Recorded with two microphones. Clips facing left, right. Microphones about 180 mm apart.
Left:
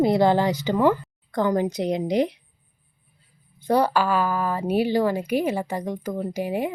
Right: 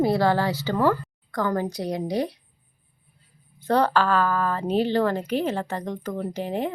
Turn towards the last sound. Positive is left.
turn(degrees=10)  # may be behind; listen again after turning